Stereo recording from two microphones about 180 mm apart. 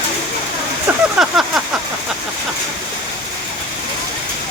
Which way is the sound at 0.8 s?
5° right (ahead or behind).